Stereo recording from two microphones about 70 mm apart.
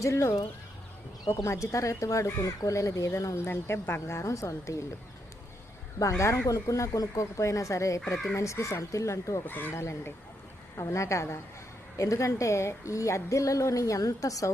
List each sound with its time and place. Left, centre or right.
0.0 s a woman's voice: left
4.0 s a woman's voice: left
6.0 s a woman's voice: left